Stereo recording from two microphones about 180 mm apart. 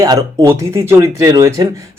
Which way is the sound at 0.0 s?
20° right (ahead or behind).